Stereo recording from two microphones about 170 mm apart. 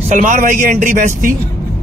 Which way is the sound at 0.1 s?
45° right (ahead or behind).